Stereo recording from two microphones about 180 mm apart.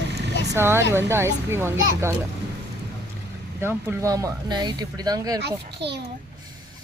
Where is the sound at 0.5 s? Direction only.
15° right (ahead or behind).